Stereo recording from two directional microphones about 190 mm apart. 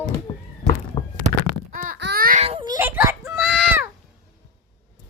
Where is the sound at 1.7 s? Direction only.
45° right (ahead or behind).